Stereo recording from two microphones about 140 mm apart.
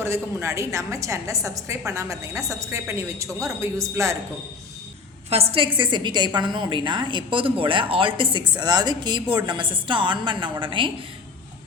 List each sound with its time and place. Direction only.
0.0 s a woman's voice: 20° right (ahead or behind)
5.3 s a woman's voice: 45° right (ahead or behind)